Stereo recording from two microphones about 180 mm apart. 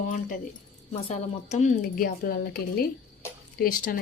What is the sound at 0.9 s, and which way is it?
A woman's voice, 35° left (ahead or behind).